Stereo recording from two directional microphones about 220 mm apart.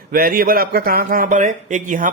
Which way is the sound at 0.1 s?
40° right (ahead or behind).